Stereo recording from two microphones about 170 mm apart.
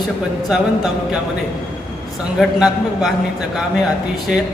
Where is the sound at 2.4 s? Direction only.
Centre (ahead or behind).